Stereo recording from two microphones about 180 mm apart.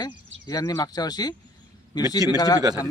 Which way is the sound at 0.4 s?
20° left (ahead or behind).